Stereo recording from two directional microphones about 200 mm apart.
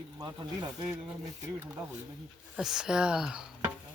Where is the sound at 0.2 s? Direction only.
20° right (ahead or behind).